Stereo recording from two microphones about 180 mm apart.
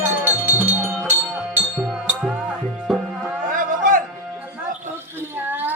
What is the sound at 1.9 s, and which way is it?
Music, centre (ahead or behind).